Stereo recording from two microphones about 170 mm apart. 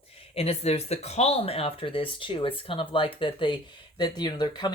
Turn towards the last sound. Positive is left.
turn(degrees=25)  # may be behind; listen again after turning